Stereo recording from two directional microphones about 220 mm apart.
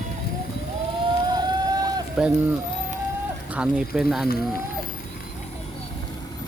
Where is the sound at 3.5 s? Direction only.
5° right (ahead or behind).